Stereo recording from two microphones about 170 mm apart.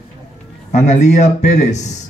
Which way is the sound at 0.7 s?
45° left (ahead or behind).